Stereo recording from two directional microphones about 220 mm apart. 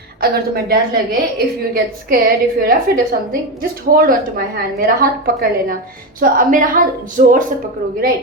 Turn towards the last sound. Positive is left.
turn(degrees=-40)  # may be behind; listen again after turning